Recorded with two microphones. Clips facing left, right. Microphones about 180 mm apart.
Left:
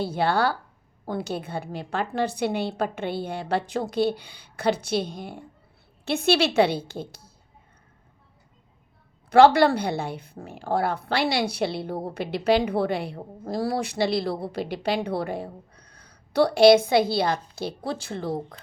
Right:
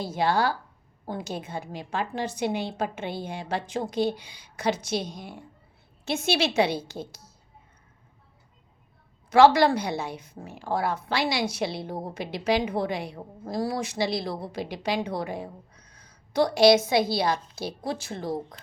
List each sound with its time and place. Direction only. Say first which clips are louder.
0.2 s a woman's voice: left 1 dB; 60° left (ahead or behind)
1.0 s a woman's voice: left 4 dB; 75° left (ahead or behind)
1.5 s a woman's voice: left 3 dB; 60° left (ahead or behind)
9.3 s a woman's voice: left 2 dB; 60° left (ahead or behind)
15.8 s a sound: left 2 dB; 60° left (ahead or behind)
16.6 s a woman's voice: left 3 dB; 55° left (ahead or behind)
17.9 s speech: left 2 dB; 30° left (ahead or behind)